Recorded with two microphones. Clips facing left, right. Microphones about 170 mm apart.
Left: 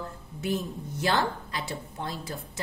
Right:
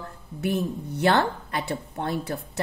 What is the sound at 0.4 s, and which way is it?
A woman's voice, 65° right (ahead or behind).